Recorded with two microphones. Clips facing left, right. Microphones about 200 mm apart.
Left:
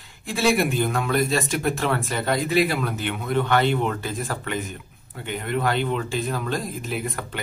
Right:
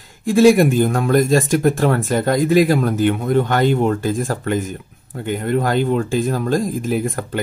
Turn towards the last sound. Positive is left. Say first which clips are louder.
# right 9 dB
turn(degrees=-45)  # may be behind; listen again after turning